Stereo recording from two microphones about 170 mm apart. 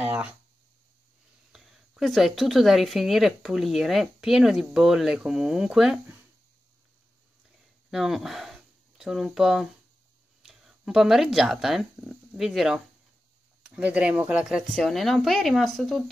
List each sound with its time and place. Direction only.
0.0 s a sound: 10° right (ahead or behind)
1.5 s speech: centre (ahead or behind)
7.9 s speech: centre (ahead or behind)